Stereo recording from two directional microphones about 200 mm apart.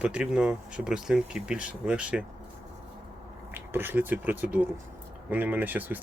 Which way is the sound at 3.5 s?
10° right (ahead or behind).